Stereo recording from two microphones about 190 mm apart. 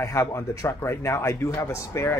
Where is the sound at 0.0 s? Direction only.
15° left (ahead or behind).